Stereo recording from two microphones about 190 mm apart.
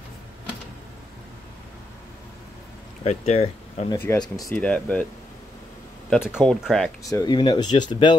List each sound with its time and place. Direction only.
3.0 s speech: 30° left (ahead or behind)
3.9 s speech: 15° left (ahead or behind)
6.2 s speech: centre (ahead or behind)
7.1 s speech: 20° left (ahead or behind)